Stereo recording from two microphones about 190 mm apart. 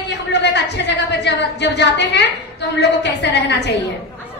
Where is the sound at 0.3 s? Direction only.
65° left (ahead or behind).